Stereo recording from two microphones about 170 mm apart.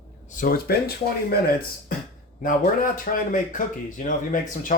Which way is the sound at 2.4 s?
55° left (ahead or behind).